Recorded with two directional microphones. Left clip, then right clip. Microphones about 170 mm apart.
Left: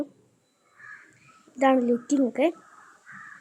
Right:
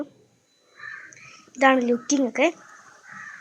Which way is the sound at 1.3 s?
15° left (ahead or behind).